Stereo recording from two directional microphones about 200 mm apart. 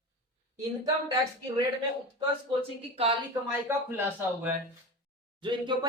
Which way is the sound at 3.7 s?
10° right (ahead or behind).